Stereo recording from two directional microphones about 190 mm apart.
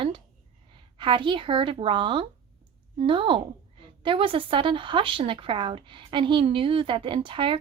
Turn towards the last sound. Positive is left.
turn(degrees=-25)  # may be behind; listen again after turning